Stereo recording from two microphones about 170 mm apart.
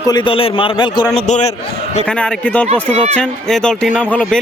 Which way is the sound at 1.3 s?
40° left (ahead or behind).